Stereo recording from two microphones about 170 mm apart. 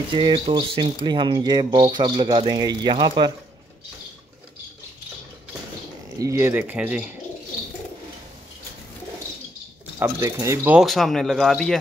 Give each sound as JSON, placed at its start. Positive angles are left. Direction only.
{"t": 0.1, "sound": "speech", "side_deg": -30}
{"t": 6.1, "sound": "speech", "side_deg": -15}
{"t": 9.9, "sound": "speech", "side_deg": -15}
{"t": 10.8, "sound": "speech", "side_deg": 0}